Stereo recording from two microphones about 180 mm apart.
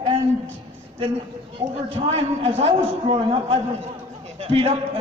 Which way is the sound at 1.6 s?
30° right (ahead or behind).